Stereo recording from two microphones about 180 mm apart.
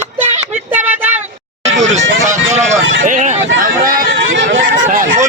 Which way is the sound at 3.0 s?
45° right (ahead or behind).